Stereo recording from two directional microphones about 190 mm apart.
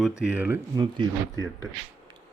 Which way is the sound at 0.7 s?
20° right (ahead or behind).